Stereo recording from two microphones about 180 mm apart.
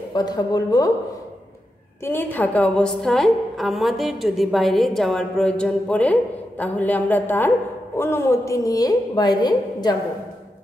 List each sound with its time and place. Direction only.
0.1 s a woman's voice: 20° left (ahead or behind)
2.0 s a woman's voice: 10° left (ahead or behind)